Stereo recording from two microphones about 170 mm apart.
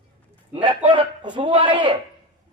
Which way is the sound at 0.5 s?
30° right (ahead or behind).